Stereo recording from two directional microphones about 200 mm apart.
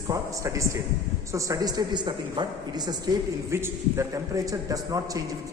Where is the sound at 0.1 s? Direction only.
15° right (ahead or behind).